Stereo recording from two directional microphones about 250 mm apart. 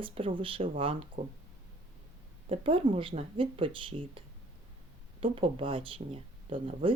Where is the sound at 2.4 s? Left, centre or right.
Right.